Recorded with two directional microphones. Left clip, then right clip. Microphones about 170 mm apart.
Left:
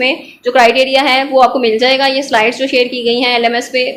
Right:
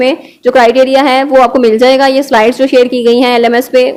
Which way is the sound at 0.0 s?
40° right (ahead or behind).